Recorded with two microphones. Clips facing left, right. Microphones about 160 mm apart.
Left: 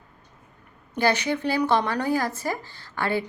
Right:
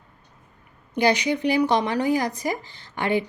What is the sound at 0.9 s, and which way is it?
Speech, 15° right (ahead or behind).